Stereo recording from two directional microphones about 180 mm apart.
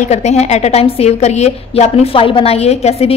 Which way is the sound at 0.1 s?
40° left (ahead or behind).